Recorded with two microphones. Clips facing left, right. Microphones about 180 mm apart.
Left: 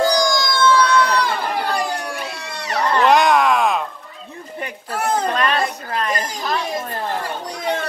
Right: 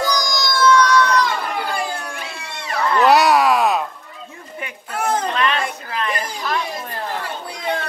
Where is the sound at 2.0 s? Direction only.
40° left (ahead or behind).